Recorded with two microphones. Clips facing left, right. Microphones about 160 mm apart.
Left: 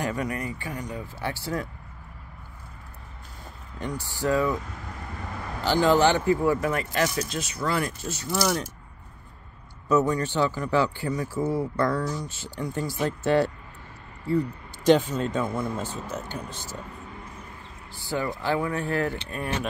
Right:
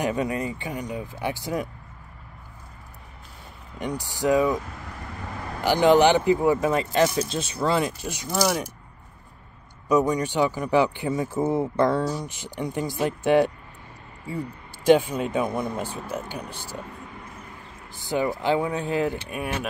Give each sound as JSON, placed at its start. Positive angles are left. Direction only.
{"t": 0.0, "sound": "speech", "side_deg": -20}
{"t": 3.7, "sound": "speech", "side_deg": -15}
{"t": 5.6, "sound": "speech", "side_deg": -15}
{"t": 9.8, "sound": "speech", "side_deg": -15}
{"t": 14.9, "sound": "speech", "side_deg": -10}
{"t": 17.9, "sound": "speech", "side_deg": -20}